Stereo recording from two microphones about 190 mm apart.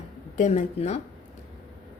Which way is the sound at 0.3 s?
35° left (ahead or behind).